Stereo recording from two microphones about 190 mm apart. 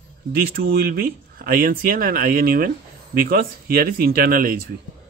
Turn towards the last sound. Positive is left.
turn(degrees=-50)  # may be behind; listen again after turning